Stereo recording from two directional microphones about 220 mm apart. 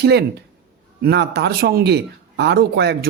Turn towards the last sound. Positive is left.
turn(degrees=-45)  # may be behind; listen again after turning